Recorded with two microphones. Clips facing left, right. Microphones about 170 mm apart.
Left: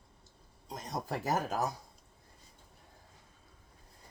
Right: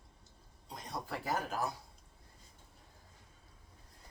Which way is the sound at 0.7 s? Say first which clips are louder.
Left 4 dB; 40° left (ahead or behind).